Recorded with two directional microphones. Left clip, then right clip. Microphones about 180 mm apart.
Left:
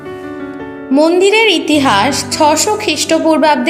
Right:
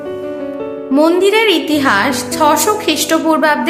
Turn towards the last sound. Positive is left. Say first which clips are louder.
# left 2 dB
turn(degrees=15)  # may be behind; listen again after turning